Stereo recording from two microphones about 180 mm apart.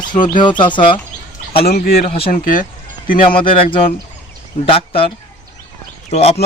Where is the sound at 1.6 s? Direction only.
60° left (ahead or behind).